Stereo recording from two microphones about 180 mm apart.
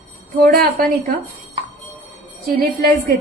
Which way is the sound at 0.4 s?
55° right (ahead or behind).